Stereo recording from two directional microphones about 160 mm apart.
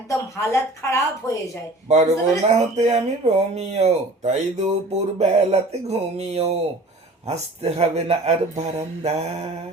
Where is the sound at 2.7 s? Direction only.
40° right (ahead or behind).